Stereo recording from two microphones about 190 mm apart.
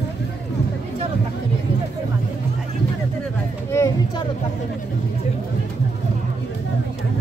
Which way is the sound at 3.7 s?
15° left (ahead or behind).